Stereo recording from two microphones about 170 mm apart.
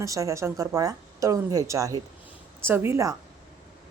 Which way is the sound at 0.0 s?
20° right (ahead or behind).